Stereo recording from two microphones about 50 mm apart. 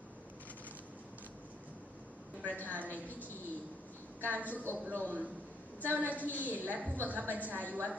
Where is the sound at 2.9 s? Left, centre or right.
Left.